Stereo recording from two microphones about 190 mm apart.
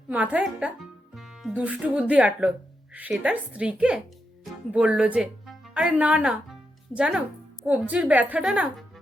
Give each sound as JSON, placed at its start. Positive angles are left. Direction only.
{"t": 0.1, "sound": "a woman's voice", "side_deg": -5}